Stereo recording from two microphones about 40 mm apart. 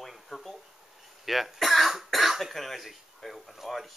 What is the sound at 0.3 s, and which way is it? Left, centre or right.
Speech, centre.